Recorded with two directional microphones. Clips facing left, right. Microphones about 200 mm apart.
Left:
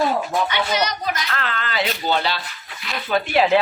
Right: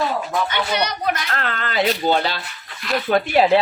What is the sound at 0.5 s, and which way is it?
Speech, 60° right (ahead or behind).